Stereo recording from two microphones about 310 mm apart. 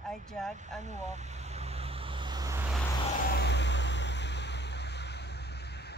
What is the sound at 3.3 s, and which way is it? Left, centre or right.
Vehicle, left.